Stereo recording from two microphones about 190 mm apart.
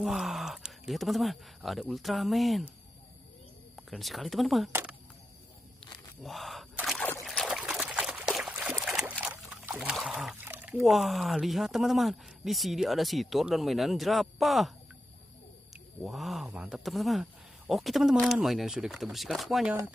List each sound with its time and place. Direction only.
0.0 s speech: centre (ahead or behind)
3.7 s speech: centre (ahead or behind)
6.2 s gasp: centre (ahead or behind)
7.2 s trickle: centre (ahead or behind)
15.7 s speech: centre (ahead or behind)